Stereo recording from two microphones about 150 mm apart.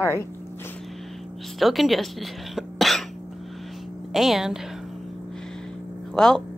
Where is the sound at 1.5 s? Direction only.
Centre (ahead or behind).